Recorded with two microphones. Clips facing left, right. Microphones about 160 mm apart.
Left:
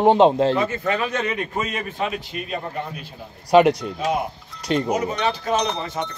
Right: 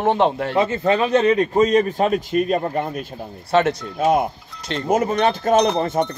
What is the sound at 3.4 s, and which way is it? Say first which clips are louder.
Speech: left 3 dB; 15° left (ahead or behind).